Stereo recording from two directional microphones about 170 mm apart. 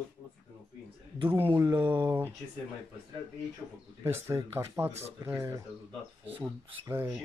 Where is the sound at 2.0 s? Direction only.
15° right (ahead or behind).